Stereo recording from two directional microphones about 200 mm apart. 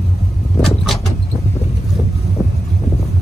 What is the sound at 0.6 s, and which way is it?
Vehicle, centre (ahead or behind).